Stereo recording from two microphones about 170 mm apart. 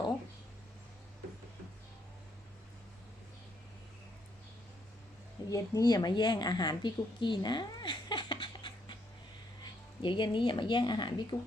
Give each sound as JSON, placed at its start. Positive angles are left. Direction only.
{"t": 5.5, "sound": "a woman's voice", "side_deg": 20}
{"t": 10.0, "sound": "speech", "side_deg": 30}